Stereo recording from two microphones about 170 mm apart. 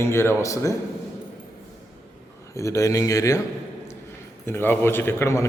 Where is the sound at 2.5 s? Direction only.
20° left (ahead or behind).